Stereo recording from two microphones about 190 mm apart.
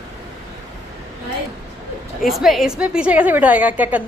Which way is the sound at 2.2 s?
Centre (ahead or behind).